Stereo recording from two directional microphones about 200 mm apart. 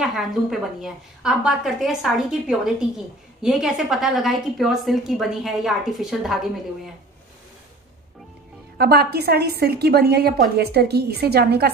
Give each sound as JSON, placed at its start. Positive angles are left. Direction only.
{"t": 0.0, "sound": "a woman's voice", "side_deg": 0}
{"t": 8.7, "sound": "a woman's voice", "side_deg": -50}